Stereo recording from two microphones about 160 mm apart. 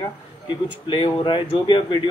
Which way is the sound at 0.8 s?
30° left (ahead or behind).